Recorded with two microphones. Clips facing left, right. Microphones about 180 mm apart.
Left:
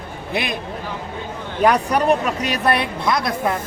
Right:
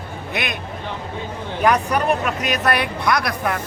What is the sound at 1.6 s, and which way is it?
A woman's voice, 35° left (ahead or behind).